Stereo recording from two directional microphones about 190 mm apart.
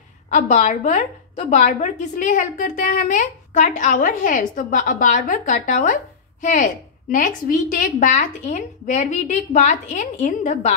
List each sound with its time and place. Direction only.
0.3 s a woman's voice: 35° left (ahead or behind)